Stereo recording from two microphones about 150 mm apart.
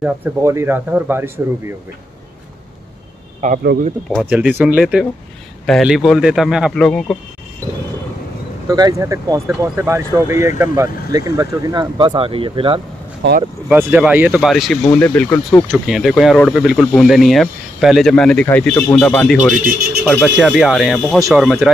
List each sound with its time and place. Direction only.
0.0 s speech: 15° right (ahead or behind)
3.4 s speech: 55° right (ahead or behind)
4.1 s speech: 5° right (ahead or behind)
8.6 s speech: 25° right (ahead or behind)
13.7 s speech: 10° right (ahead or behind)
14.4 s speech: centre (ahead or behind)
15.9 s speech: centre (ahead or behind)
19.3 s speech: 65° right (ahead or behind)
20.1 s speech: 10° left (ahead or behind)
20.3 s speech: 5° right (ahead or behind)